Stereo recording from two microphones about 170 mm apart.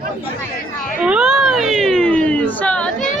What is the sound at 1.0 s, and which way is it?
Speech, 5° right (ahead or behind).